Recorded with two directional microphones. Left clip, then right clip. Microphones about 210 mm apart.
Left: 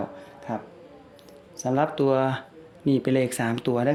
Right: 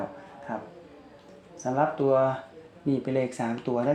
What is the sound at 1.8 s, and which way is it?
Speech, 50° left (ahead or behind).